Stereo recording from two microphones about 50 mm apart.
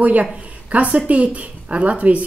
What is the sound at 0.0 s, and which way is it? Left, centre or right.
Speech, right.